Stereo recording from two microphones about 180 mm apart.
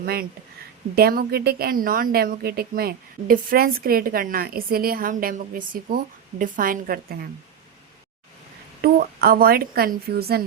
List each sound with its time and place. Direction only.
0.0 s a woman's voice: 60° right (ahead or behind)
8.8 s a woman's voice: 55° right (ahead or behind)